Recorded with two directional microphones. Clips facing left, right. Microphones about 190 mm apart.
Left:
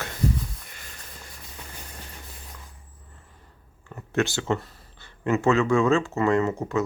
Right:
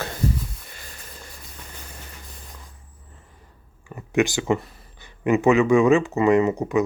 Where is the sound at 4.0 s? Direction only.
15° right (ahead or behind).